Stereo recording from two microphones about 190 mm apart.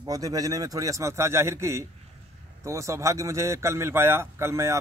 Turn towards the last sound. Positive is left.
turn(degrees=-15)  # may be behind; listen again after turning